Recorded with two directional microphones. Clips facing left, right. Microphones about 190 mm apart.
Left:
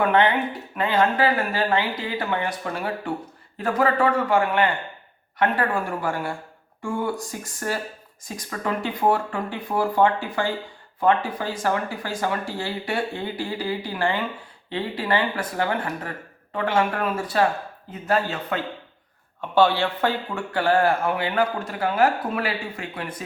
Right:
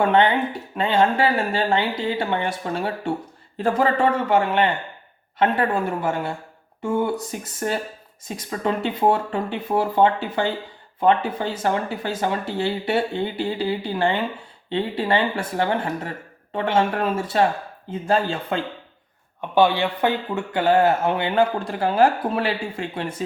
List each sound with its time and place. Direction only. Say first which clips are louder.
0.0 s speech: right 2 dB; 25° right (ahead or behind)
19.4 s speech: right 1 dB; 15° right (ahead or behind)